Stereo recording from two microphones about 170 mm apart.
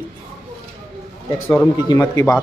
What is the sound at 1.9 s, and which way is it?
Speech, 20° left (ahead or behind).